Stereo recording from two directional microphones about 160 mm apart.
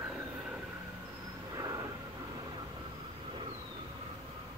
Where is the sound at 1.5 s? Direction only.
20° right (ahead or behind).